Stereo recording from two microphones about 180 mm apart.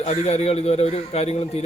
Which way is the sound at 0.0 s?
35° left (ahead or behind).